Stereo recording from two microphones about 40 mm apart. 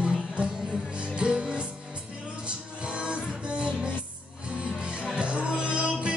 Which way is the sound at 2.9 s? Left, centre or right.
Right.